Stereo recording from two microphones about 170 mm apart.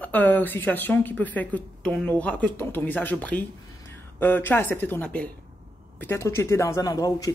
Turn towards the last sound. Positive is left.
turn(degrees=20)  # may be behind; listen again after turning